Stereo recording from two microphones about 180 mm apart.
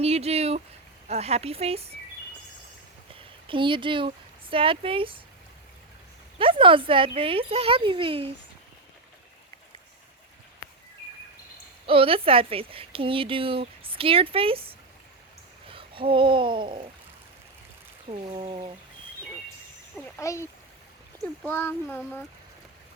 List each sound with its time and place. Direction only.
0.0 s a woman's voice: 35° right (ahead or behind)
3.5 s speech: 30° right (ahead or behind)
6.4 s speech: 30° right (ahead or behind)
11.9 s a woman's voice: 30° right (ahead or behind)
18.1 s a woman's voice: 35° right (ahead or behind)
20.1 s speech: 15° left (ahead or behind)